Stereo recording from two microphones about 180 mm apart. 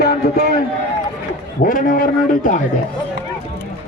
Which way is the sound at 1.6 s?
50° left (ahead or behind).